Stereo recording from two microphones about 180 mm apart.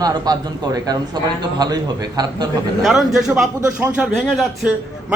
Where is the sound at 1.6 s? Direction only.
20° right (ahead or behind).